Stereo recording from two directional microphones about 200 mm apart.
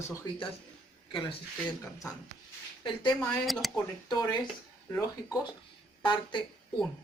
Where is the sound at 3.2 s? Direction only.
Centre (ahead or behind).